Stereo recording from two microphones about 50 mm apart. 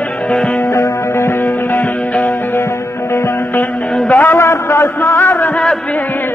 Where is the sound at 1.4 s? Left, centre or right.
Left.